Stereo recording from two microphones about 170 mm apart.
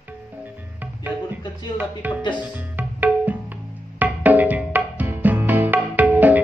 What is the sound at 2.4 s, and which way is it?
Music, 10° right (ahead or behind).